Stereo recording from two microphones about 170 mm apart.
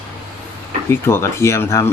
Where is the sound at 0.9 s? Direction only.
15° left (ahead or behind).